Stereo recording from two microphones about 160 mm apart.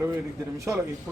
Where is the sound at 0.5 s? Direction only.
20° right (ahead or behind).